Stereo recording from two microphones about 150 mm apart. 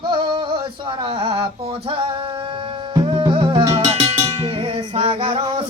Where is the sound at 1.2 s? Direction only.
40° right (ahead or behind).